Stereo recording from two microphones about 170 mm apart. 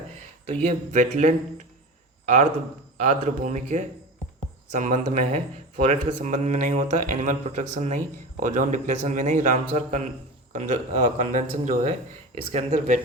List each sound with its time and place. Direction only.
0.7 s speech: 45° right (ahead or behind)